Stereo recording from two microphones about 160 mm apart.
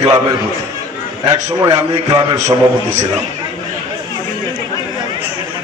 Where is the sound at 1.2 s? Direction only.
25° right (ahead or behind).